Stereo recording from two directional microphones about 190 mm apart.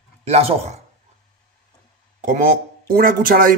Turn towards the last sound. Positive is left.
turn(degrees=-45)  # may be behind; listen again after turning